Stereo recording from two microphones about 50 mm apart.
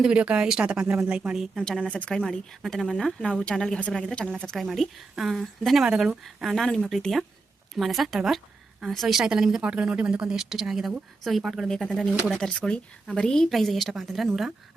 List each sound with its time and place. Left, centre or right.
0.0 s speech: right
1.8 s speech: left
2.6 s speech: centre
4.7 s a woman's voice: centre
5.8 s a woman's voice: centre
6.2 s a woman's voice: centre
9.2 s a woman's voice: centre